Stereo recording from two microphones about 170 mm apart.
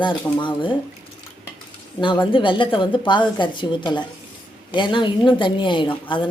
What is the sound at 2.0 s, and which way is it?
Speech, 30° left (ahead or behind).